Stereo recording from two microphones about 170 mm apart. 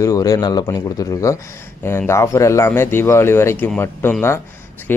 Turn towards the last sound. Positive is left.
turn(degrees=10)  # may be behind; listen again after turning